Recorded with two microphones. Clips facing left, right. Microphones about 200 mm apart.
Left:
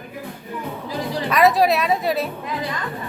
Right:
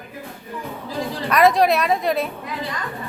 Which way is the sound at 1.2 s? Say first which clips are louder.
Right 1 dB; centre (ahead or behind).